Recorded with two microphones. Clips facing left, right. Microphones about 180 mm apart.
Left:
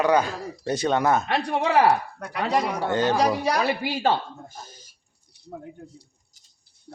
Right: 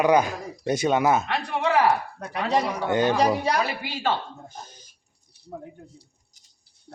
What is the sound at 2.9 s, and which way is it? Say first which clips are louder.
Speech: right 1 dB; 10° right (ahead or behind).